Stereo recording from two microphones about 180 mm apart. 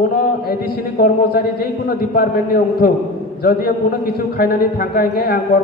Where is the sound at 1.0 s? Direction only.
60° left (ahead or behind).